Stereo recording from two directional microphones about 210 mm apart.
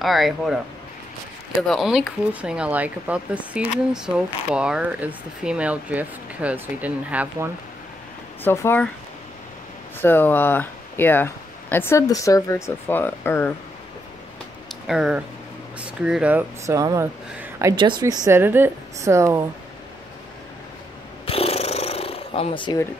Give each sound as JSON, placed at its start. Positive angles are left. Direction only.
{"t": 0.0, "sound": "speech", "side_deg": 0}
{"t": 1.7, "sound": "speech", "side_deg": 0}
{"t": 8.5, "sound": "speech", "side_deg": 10}
{"t": 9.9, "sound": "speech", "side_deg": 10}
{"t": 14.9, "sound": "speech", "side_deg": -5}
{"t": 21.3, "sound": "a sound", "side_deg": 30}